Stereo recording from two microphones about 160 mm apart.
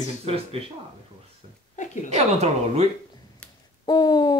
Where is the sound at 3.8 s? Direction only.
25° left (ahead or behind).